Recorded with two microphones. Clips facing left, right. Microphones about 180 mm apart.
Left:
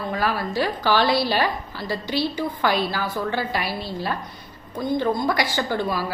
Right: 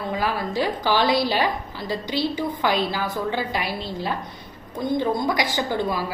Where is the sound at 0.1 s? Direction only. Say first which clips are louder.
Even; 15° right (ahead or behind).